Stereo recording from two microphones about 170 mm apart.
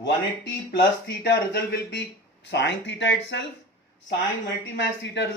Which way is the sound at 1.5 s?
85° left.